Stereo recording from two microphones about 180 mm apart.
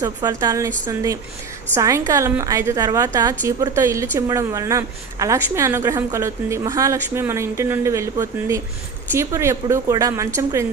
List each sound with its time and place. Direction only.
0.0 s a woman's voice: 20° right (ahead or behind)